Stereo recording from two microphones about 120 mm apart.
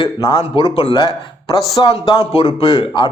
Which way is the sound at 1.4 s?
35° left (ahead or behind).